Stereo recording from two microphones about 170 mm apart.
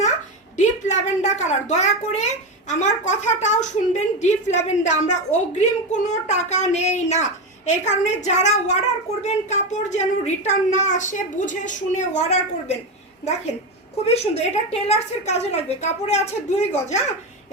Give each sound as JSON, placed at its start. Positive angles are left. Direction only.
{"t": 0.5, "sound": "a woman's voice", "side_deg": 45}
{"t": 14.0, "sound": "a woman's voice", "side_deg": 40}